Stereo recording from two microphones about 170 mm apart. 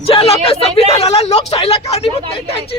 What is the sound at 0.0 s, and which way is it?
Speech, 35° left (ahead or behind).